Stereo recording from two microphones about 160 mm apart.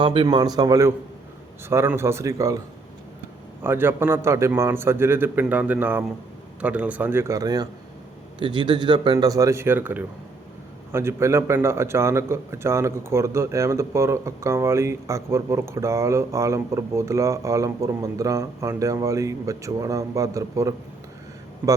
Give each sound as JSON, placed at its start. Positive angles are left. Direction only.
{"t": 0.0, "sound": "a man's voice", "side_deg": -35}
{"t": 3.6, "sound": "a man's voice", "side_deg": -15}